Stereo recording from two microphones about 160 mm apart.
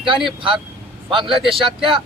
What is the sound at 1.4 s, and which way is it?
Speech, centre (ahead or behind).